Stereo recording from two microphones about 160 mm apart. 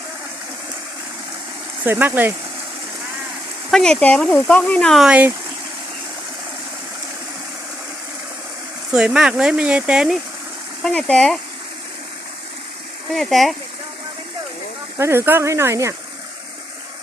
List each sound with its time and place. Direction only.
1.8 s speech: 15° right (ahead or behind)
3.7 s speech: 5° left (ahead or behind)
8.9 s speech: 5° right (ahead or behind)
13.1 s speech: centre (ahead or behind)
14.9 s speech: 15° right (ahead or behind)